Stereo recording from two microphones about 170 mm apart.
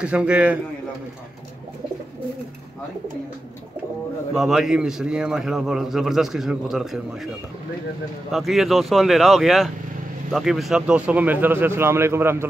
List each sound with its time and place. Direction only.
0.0 s a man's voice: 5° right (ahead or behind)
4.3 s a man's voice: centre (ahead or behind)
8.3 s a man's voice: centre (ahead or behind)